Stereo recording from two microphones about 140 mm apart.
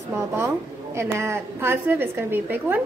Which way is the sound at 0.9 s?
20° right (ahead or behind).